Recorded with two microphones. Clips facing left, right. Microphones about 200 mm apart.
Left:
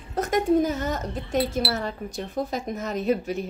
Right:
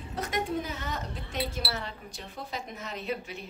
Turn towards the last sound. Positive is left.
turn(degrees=45)  # may be behind; listen again after turning